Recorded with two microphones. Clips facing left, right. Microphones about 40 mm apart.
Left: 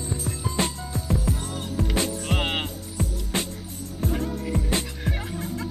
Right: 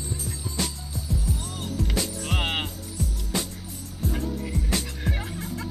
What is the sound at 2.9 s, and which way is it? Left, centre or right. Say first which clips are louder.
Music: left 2 dB; left.